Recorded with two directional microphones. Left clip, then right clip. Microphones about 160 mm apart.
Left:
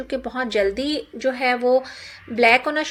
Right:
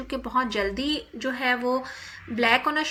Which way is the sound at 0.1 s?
20° left (ahead or behind).